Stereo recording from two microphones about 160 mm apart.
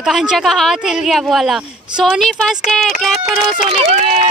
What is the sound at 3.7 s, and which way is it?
Speech, 40° right (ahead or behind).